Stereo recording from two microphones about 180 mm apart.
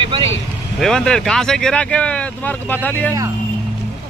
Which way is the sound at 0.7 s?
Centre (ahead or behind).